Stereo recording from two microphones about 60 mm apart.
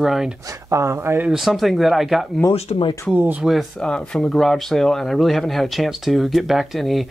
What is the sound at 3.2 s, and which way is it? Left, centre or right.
Speech, right.